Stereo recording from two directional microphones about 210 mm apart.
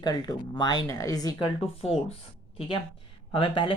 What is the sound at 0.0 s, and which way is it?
Speech, 20° left (ahead or behind).